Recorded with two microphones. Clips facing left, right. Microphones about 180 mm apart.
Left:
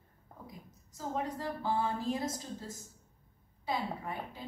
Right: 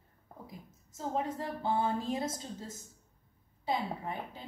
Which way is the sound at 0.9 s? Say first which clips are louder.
Right 2 dB; 25° right (ahead or behind).